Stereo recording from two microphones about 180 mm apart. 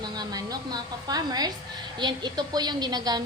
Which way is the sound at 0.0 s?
20° right (ahead or behind).